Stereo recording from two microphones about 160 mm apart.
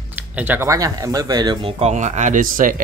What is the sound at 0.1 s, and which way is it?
Speech, 10° right (ahead or behind).